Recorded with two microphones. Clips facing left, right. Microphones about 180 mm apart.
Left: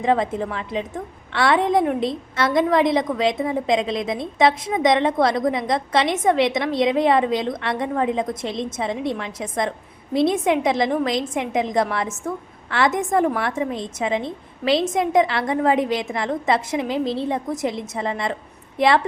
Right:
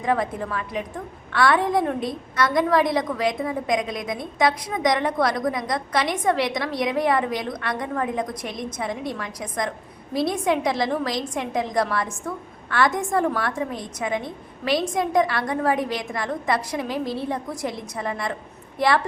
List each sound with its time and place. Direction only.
0.0 s a woman's voice: 20° left (ahead or behind)